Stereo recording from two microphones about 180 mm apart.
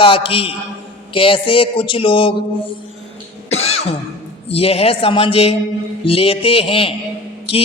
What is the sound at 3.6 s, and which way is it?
Cough, 35° left (ahead or behind).